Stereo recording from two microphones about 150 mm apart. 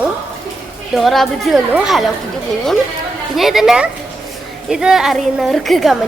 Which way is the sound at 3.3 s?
Centre (ahead or behind).